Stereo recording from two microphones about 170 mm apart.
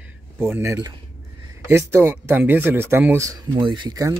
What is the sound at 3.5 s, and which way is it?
Speech, 30° right (ahead or behind).